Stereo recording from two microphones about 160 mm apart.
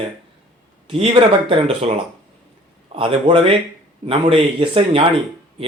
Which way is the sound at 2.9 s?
35° right (ahead or behind).